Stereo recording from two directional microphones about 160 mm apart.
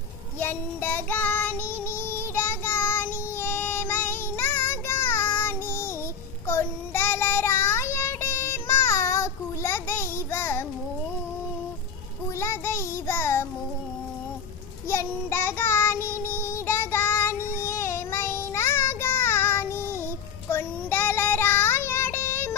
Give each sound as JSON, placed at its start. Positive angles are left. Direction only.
{"t": 0.4, "sound": "child singing", "side_deg": 10}
{"t": 12.4, "sound": "child singing", "side_deg": 15}
{"t": 14.9, "sound": "child singing", "side_deg": 15}